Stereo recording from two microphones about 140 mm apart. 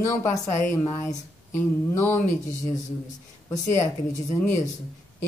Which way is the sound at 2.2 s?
65° left (ahead or behind).